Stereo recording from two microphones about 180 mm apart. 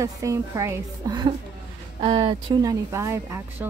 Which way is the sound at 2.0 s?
30° right (ahead or behind).